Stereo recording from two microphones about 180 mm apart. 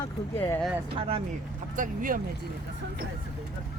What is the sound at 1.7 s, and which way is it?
Speech, 50° right (ahead or behind).